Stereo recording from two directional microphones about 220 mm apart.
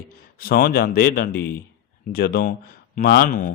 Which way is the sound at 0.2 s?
40° left (ahead or behind).